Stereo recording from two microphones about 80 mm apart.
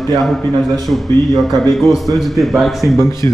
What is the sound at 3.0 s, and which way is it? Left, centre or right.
Speech, left.